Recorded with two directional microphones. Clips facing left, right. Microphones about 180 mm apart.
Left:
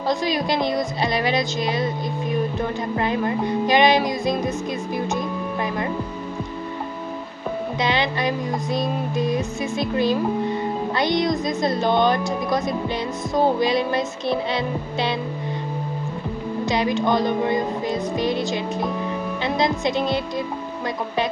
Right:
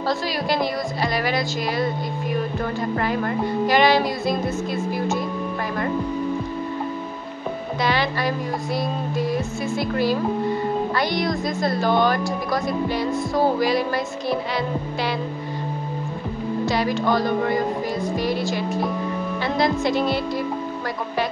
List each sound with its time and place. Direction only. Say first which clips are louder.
0.1 s speech: left 3 dB; 20° left (ahead or behind)
3.6 s music: even; 20° left (ahead or behind)
7.8 s speech: even; 20° left (ahead or behind)
16.6 s speech: left 1 dB; 20° left (ahead or behind)